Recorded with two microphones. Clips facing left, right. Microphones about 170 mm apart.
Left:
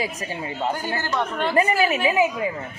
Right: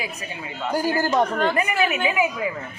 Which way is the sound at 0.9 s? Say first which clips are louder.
Right 5 dB; 35° right (ahead or behind).